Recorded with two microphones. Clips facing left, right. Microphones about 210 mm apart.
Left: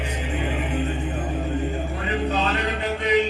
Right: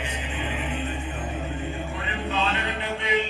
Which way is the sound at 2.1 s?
40° left (ahead or behind).